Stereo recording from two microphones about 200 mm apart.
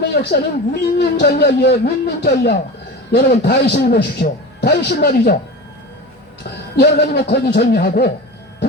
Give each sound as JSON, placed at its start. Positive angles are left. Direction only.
{"t": 0.0, "sound": "speech", "side_deg": 55}
{"t": 6.7, "sound": "a man's voice", "side_deg": 55}